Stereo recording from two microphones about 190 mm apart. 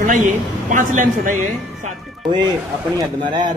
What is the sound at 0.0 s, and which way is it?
Speech, 40° right (ahead or behind).